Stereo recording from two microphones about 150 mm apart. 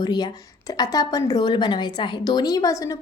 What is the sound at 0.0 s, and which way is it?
A woman's voice, 30° left (ahead or behind).